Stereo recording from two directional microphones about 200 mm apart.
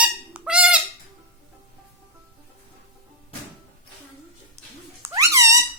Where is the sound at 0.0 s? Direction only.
5° right (ahead or behind).